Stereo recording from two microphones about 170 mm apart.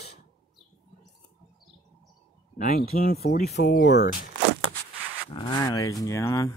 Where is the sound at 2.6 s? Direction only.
55° left (ahead or behind); by 4.2 s 80° left.